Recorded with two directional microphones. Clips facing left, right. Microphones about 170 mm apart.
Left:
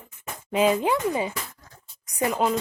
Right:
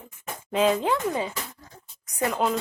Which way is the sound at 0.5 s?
10° left (ahead or behind).